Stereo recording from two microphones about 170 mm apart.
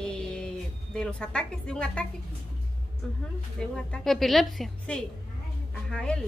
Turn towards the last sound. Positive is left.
turn(degrees=5)  # may be behind; listen again after turning